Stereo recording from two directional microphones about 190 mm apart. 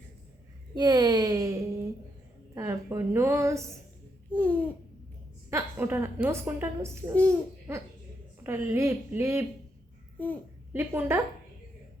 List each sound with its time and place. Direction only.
0.7 s a woman's voice: 20° right (ahead or behind)
4.3 s babbling: 5° left (ahead or behind)
5.5 s a woman's voice: 10° right (ahead or behind)
10.7 s a woman's voice: 10° right (ahead or behind)